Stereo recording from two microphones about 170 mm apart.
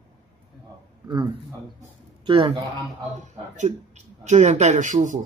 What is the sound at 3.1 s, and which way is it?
Speech, 45° right (ahead or behind).